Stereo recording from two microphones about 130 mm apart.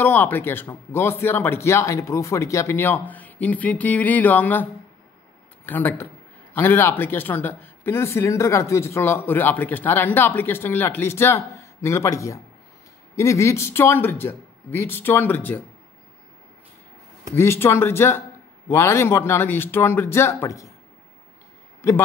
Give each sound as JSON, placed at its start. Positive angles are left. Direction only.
{"t": 0.0, "sound": "speech", "side_deg": 15}
{"t": 5.7, "sound": "speech", "side_deg": 15}
{"t": 17.4, "sound": "speech", "side_deg": 20}